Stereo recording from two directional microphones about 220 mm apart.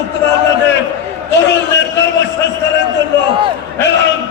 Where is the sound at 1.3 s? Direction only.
50° left (ahead or behind).